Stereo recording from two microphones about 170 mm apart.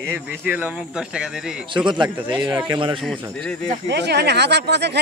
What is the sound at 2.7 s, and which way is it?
Speech, 30° right (ahead or behind).